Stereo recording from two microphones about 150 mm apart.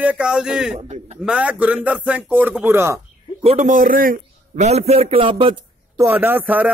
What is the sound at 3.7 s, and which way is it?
Speech, 65° right (ahead or behind).